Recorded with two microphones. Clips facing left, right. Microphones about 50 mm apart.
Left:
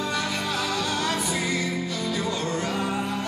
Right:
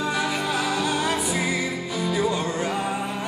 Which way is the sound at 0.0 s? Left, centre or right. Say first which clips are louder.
Right 3 dB; centre.